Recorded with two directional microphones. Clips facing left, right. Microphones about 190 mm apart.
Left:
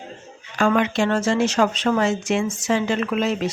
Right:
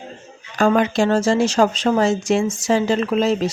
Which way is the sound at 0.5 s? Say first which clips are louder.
Right 3 dB; 40° right (ahead or behind).